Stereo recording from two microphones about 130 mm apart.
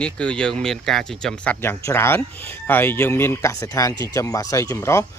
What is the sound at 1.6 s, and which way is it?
Speech, 20° left (ahead or behind).